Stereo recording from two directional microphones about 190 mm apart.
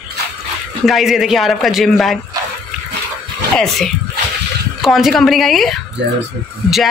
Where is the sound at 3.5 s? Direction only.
Centre (ahead or behind).